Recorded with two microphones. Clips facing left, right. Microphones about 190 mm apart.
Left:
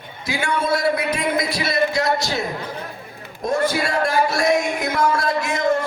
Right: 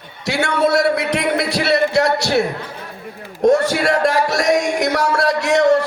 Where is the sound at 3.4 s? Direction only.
80° right.